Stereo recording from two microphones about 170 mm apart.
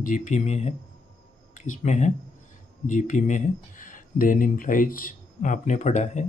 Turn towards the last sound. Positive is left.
turn(degrees=45)  # may be behind; listen again after turning